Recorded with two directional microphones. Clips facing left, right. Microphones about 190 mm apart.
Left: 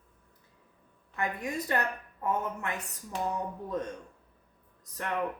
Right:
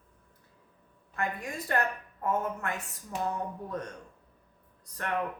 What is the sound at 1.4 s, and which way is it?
Speech, 20° left (ahead or behind).